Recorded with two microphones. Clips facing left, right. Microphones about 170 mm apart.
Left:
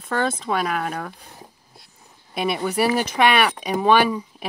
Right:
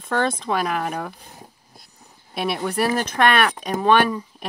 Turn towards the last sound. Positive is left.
turn(degrees=5)  # may be behind; listen again after turning